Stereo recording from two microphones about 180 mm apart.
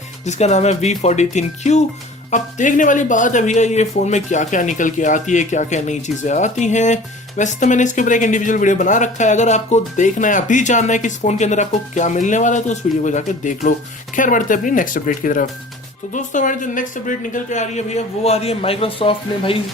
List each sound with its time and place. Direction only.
0.3 s speech: 40° left (ahead or behind)